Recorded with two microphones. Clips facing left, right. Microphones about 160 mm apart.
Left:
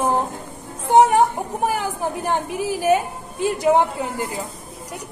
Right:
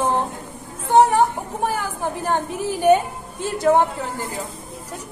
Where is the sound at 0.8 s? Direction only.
20° left (ahead or behind).